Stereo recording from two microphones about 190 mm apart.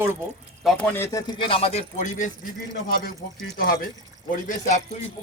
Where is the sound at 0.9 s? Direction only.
15° left (ahead or behind); by 2.3 s 40° left (ahead or behind).